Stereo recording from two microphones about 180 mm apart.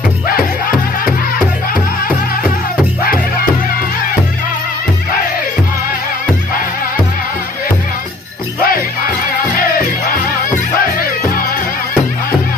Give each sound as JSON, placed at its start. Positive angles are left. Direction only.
{"t": 0.3, "sound": "music", "side_deg": 55}
{"t": 8.6, "sound": "music", "side_deg": 55}